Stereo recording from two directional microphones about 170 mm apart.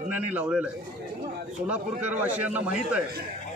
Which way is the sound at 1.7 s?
10° right (ahead or behind).